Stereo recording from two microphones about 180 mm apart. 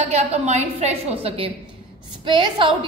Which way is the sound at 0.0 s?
40° right (ahead or behind).